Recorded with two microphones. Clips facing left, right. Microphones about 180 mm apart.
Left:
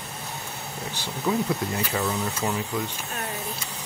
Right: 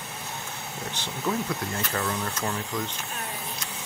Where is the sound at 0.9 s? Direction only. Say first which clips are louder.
Left 3 dB; 10° left (ahead or behind).